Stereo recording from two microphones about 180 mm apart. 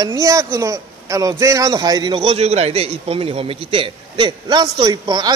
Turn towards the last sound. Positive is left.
turn(degrees=-20)  # may be behind; listen again after turning